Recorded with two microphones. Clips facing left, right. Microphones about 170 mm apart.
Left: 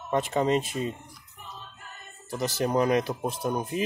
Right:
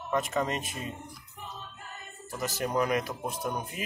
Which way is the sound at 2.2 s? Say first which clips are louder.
Left 5 dB; 35° left (ahead or behind).